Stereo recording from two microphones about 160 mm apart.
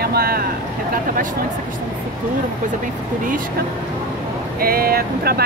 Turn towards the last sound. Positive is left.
turn(degrees=-70)  # may be behind; listen again after turning